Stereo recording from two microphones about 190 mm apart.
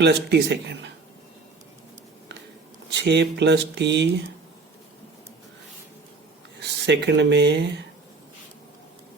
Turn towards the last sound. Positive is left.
turn(degrees=-65)  # may be behind; listen again after turning